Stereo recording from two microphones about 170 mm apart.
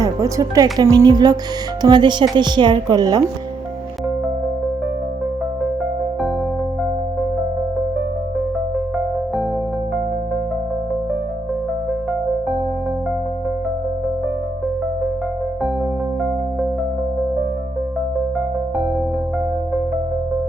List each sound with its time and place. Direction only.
0.0 s speech: 20° right (ahead or behind)